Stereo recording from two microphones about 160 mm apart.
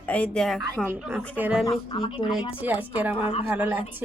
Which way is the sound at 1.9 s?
30° left (ahead or behind).